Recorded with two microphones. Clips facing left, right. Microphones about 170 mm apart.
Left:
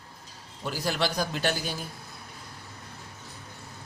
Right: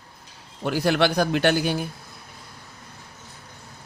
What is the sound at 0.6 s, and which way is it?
A man's voice, 65° right (ahead or behind).